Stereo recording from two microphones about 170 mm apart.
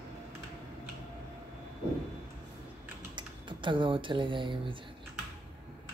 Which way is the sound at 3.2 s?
30° right (ahead or behind).